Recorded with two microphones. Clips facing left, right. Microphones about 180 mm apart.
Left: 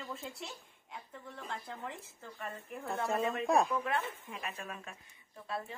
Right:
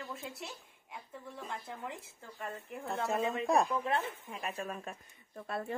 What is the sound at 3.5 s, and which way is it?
Speech, centre (ahead or behind).